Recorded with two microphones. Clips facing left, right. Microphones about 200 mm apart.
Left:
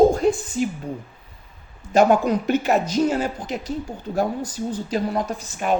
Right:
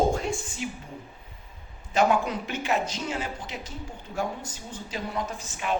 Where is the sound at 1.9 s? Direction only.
40° left (ahead or behind).